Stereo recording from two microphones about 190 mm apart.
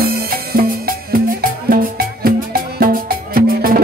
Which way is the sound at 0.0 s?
50° right (ahead or behind).